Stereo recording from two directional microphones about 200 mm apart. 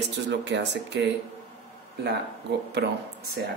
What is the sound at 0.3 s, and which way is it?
Speech, 60° right (ahead or behind).